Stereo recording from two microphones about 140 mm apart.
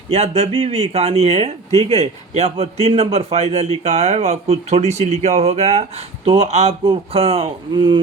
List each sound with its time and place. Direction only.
0.1 s a man's voice: 50° right (ahead or behind)